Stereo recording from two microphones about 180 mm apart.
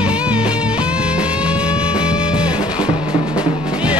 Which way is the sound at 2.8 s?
30° left (ahead or behind).